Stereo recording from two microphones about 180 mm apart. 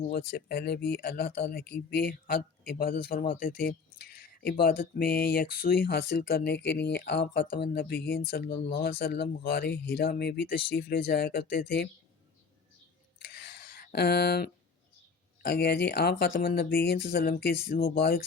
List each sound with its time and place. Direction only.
0.1 s speech: 60° left (ahead or behind)
13.3 s a sound: 65° left (ahead or behind)
15.4 s speech: 60° left (ahead or behind)